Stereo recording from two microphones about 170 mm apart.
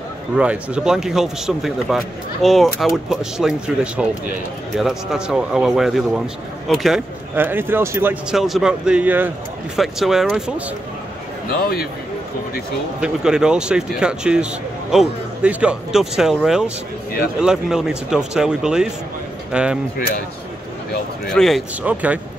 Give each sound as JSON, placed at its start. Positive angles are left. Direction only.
{"t": 0.4, "sound": "a man's voice", "side_deg": -5}
{"t": 7.3, "sound": "a man's voice", "side_deg": -10}
{"t": 11.5, "sound": "a man's voice", "side_deg": 60}
{"t": 13.0, "sound": "a man's voice", "side_deg": -5}
{"t": 21.3, "sound": "a man's voice", "side_deg": 0}
{"t": 21.8, "sound": "speech", "side_deg": -10}